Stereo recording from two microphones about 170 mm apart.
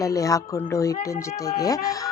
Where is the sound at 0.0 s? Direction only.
20° left (ahead or behind).